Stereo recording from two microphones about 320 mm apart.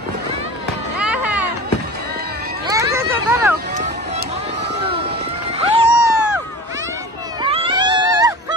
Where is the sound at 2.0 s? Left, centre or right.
Right.